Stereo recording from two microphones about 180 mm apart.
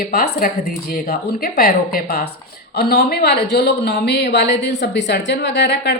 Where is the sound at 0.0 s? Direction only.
55° left (ahead or behind).